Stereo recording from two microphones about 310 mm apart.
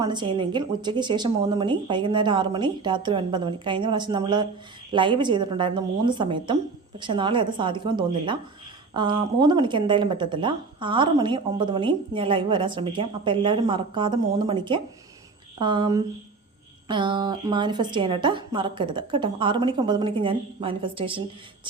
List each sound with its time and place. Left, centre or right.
0.0 s a woman's voice: centre